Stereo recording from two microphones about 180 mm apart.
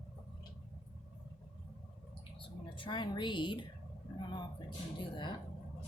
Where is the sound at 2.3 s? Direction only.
30° left (ahead or behind).